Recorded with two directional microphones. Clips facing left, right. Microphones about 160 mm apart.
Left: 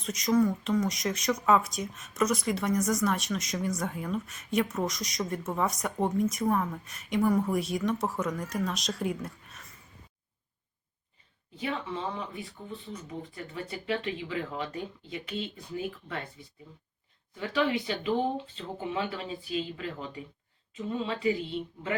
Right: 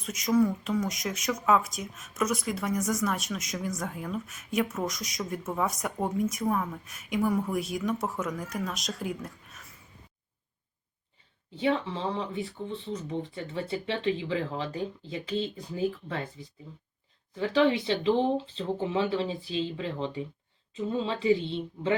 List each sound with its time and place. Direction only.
0.0 s speech: 5° right (ahead or behind)
11.5 s speech: 30° right (ahead or behind)
17.3 s speech: 30° right (ahead or behind)